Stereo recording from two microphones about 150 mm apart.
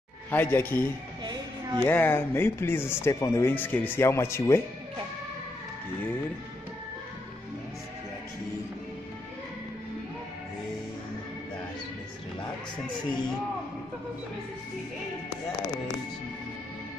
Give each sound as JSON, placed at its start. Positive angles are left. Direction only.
{"t": 0.3, "sound": "speech", "side_deg": 15}
{"t": 1.2, "sound": "a sound", "side_deg": -30}
{"t": 1.9, "sound": "speech", "side_deg": 15}